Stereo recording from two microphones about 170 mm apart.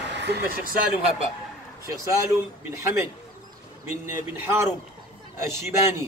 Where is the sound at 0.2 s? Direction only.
80° right.